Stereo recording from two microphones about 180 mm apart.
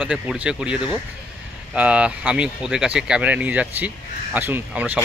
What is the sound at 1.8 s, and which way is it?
Speech, 5° right (ahead or behind).